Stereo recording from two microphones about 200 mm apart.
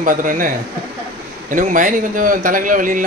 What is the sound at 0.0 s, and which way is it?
Speech, 40° right (ahead or behind).